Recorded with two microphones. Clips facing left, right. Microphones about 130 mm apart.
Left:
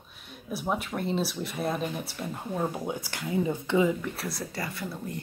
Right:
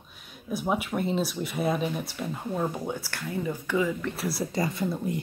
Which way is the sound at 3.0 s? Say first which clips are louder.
Left 3 dB; 20° left (ahead or behind).